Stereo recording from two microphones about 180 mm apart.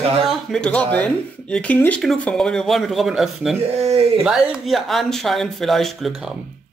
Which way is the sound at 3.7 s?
35° right (ahead or behind).